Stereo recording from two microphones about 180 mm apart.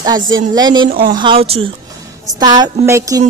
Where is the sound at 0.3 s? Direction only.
25° right (ahead or behind).